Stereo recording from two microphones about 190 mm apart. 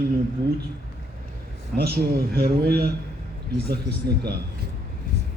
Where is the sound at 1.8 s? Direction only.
55° right (ahead or behind).